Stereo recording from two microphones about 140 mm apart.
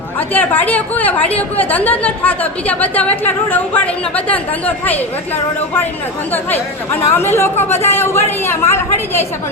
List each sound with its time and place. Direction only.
0.2 s a woman's voice: 10° left (ahead or behind)
6.3 s a woman's voice: 15° left (ahead or behind)